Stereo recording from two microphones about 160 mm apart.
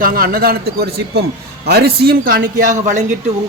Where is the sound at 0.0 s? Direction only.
65° right (ahead or behind).